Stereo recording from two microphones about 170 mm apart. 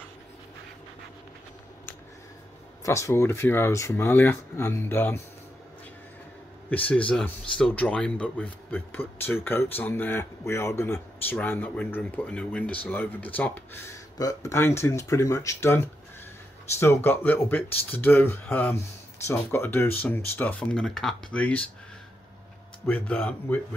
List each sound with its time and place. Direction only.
2.8 s speech: 15° left (ahead or behind)
6.7 s speech: 10° left (ahead or behind)
22.8 s speech: 10° left (ahead or behind)